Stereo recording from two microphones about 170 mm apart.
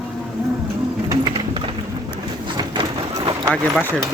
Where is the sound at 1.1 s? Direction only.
25° right (ahead or behind).